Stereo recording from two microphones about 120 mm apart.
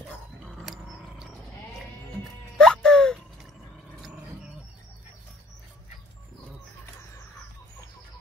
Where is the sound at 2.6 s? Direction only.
5° left (ahead or behind).